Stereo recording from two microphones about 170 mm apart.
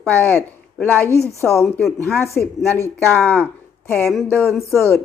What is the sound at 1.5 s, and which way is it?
Speech, centre (ahead or behind).